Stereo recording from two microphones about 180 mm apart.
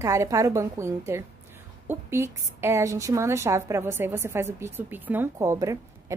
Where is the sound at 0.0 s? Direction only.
15° right (ahead or behind).